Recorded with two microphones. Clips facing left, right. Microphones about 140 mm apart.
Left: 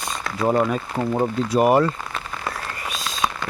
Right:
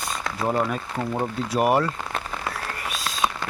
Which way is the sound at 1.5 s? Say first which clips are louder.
Left 4 dB; centre (ahead or behind).